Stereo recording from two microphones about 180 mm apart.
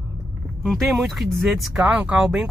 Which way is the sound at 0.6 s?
Centre (ahead or behind).